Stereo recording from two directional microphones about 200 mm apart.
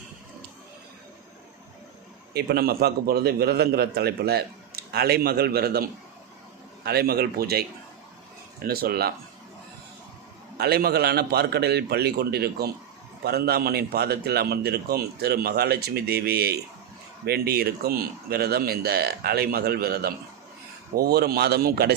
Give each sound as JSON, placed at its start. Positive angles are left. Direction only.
{"t": 2.3, "sound": "a man's voice", "side_deg": -55}
{"t": 8.6, "sound": "a man's voice", "side_deg": -50}
{"t": 10.6, "sound": "a man's voice", "side_deg": -50}